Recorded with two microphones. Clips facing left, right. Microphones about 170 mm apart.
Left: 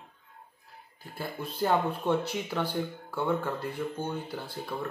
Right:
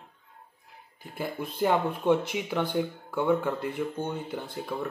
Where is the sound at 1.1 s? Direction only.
15° right (ahead or behind).